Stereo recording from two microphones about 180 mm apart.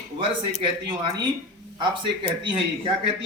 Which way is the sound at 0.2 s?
25° right (ahead or behind).